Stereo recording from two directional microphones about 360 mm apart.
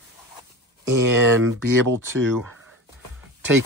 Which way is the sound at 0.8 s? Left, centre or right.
Right.